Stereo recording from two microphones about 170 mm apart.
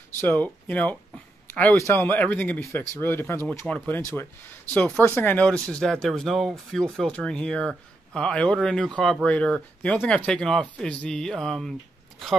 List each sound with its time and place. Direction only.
0.2 s speech: 10° left (ahead or behind)